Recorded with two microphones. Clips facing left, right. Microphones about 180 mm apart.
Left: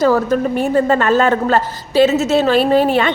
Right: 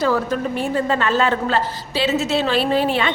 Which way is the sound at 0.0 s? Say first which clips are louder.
Left 6 dB; 45° left (ahead or behind).